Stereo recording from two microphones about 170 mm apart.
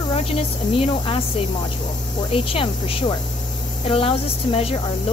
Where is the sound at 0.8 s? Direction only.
35° left (ahead or behind).